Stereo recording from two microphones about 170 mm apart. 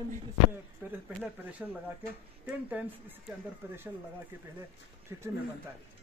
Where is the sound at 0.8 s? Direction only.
15° right (ahead or behind).